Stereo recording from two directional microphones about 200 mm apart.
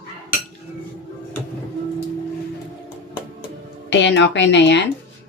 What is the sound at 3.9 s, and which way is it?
Speech, 60° left (ahead or behind).